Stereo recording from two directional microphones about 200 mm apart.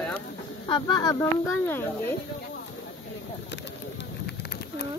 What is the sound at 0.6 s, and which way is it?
Speech, 20° left (ahead or behind).